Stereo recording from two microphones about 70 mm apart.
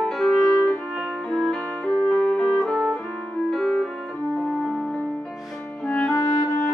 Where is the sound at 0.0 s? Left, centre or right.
Centre.